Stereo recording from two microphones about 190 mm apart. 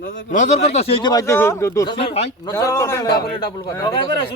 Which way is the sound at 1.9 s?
30° left (ahead or behind).